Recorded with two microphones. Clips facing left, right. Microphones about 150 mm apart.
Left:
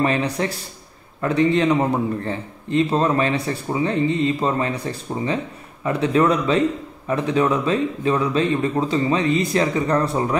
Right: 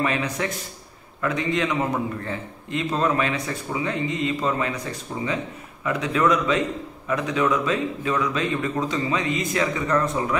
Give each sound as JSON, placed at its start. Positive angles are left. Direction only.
{"t": 0.0, "sound": "a man's voice", "side_deg": 35}